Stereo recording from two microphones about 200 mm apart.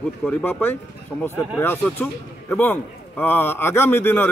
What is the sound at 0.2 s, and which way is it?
A man's voice, 10° left (ahead or behind).